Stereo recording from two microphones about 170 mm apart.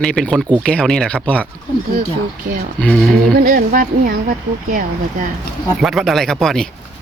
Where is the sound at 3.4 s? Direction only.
50° right (ahead or behind).